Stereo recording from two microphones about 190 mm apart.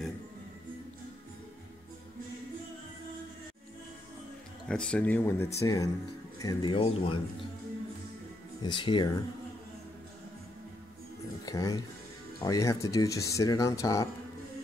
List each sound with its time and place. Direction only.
4.6 s speech: 5° left (ahead or behind); by 7.2 s 25° left (ahead or behind)
8.6 s speech: 25° left (ahead or behind)
11.4 s speech: 20° left (ahead or behind)